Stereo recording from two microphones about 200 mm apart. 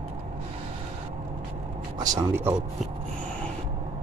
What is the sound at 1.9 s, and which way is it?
Speech, 15° right (ahead or behind).